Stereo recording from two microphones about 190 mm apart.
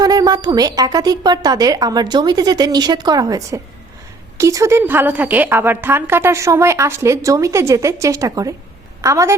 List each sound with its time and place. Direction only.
0.0 s a woman's voice: 20° right (ahead or behind)